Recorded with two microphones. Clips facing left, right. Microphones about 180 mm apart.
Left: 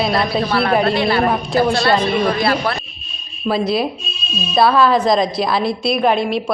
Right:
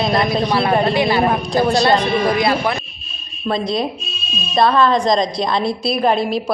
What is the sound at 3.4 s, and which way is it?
A woman's voice, 5° left (ahead or behind).